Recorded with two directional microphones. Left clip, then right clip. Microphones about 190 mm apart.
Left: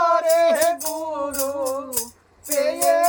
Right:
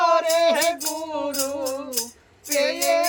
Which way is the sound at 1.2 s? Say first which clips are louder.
Right 1 dB; 10° left (ahead or behind).